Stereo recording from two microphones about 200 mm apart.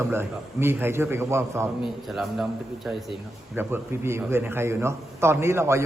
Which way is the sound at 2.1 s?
Centre (ahead or behind).